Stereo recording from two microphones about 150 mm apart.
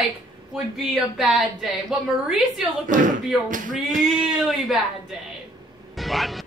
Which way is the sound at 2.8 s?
60° right (ahead or behind).